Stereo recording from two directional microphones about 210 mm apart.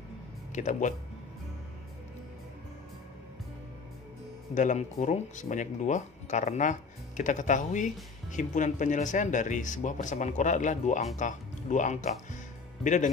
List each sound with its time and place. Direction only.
0.5 s speech: 35° left (ahead or behind)
4.6 s speech: 35° left (ahead or behind)